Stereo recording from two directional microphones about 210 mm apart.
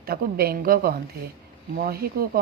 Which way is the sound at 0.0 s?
45° right (ahead or behind).